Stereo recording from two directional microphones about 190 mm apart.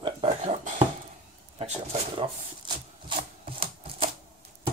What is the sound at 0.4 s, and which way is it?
Dishes, 40° right (ahead or behind).